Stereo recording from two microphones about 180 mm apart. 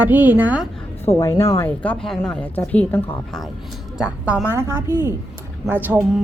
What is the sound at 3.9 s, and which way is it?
A woman's voice, 5° right (ahead or behind).